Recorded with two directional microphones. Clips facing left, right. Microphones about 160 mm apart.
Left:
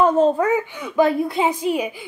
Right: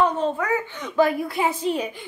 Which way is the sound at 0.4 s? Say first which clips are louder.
Left 6 dB; 30° left (ahead or behind).